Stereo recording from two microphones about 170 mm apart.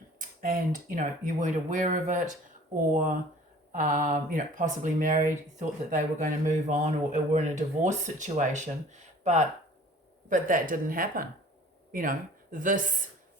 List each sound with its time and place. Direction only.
0.2 s speech: 55° right (ahead or behind)
3.7 s speech: 50° right (ahead or behind)